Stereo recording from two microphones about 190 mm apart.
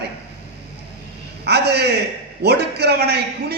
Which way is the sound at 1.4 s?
60° right (ahead or behind).